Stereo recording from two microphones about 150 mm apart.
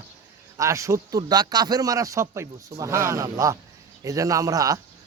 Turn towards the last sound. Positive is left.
turn(degrees=-25)  # may be behind; listen again after turning